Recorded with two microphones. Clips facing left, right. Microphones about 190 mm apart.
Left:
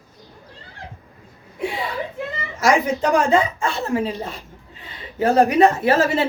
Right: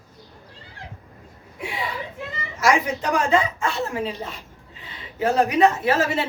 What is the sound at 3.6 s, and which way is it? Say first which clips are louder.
Speech: left 3 dB; 30° left (ahead or behind).